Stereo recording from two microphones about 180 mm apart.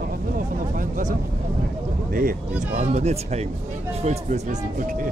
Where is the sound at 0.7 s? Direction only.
50° right (ahead or behind).